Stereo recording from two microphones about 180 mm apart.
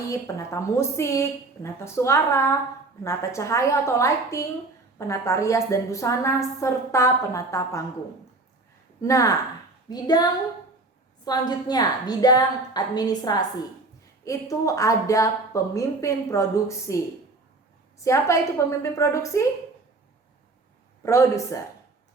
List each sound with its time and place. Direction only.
0.1 s a woman's voice: 15° left (ahead or behind)
9.0 s a woman's voice: 15° left (ahead or behind)
11.3 s a woman's voice: 20° left (ahead or behind)
18.0 s a woman's voice: 15° left (ahead or behind)
21.0 s a woman's voice: 15° left (ahead or behind)